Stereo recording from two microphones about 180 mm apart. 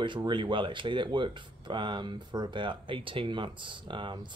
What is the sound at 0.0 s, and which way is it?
Speech, 25° right (ahead or behind).